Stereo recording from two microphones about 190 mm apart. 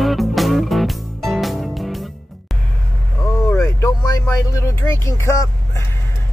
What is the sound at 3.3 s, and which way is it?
Vehicle, 15° left (ahead or behind).